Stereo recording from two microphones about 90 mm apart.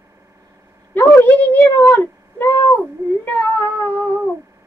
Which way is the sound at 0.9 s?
20° left (ahead or behind).